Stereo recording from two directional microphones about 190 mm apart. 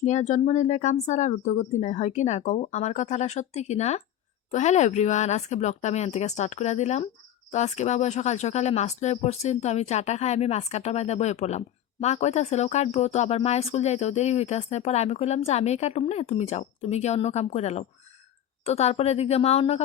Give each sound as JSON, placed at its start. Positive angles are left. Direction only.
{"t": 0.0, "sound": "speech", "side_deg": 35}